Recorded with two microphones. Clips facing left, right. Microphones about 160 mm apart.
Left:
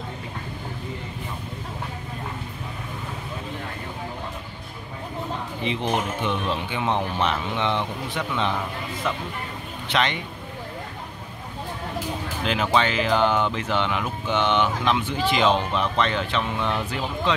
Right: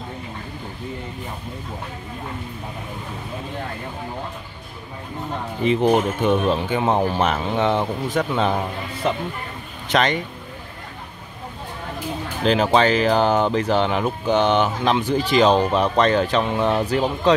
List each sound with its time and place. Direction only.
5.6 s speech: 45° right (ahead or behind)
9.8 s speech: 45° right (ahead or behind)
12.4 s speech: 35° right (ahead or behind)